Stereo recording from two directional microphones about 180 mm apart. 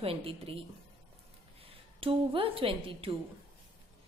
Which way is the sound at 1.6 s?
30° right (ahead or behind).